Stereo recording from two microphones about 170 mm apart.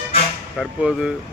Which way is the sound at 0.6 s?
5° right (ahead or behind).